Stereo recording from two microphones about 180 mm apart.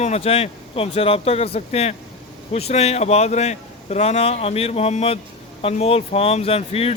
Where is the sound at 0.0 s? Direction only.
35° left (ahead or behind).